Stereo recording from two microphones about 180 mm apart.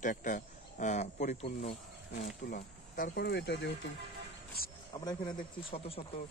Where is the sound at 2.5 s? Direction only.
50° left (ahead or behind); by 3.7 s 75° left (ahead or behind).